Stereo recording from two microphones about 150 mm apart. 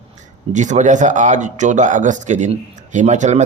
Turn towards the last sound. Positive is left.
turn(degrees=-50)  # may be behind; listen again after turning